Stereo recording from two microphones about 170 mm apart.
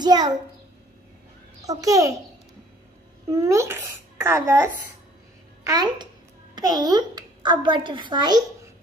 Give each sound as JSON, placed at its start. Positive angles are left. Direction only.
{"t": 0.0, "sound": "a child's voice", "side_deg": -25}
{"t": 1.6, "sound": "a child's voice", "side_deg": -20}
{"t": 3.3, "sound": "a child's voice", "side_deg": -15}